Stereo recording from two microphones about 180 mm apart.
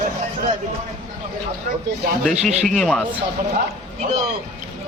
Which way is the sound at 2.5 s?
40° right (ahead or behind).